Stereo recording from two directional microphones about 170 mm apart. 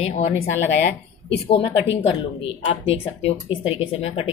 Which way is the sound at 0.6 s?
85° left.